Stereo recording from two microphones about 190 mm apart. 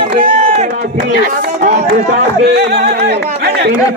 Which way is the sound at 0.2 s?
40° right (ahead or behind).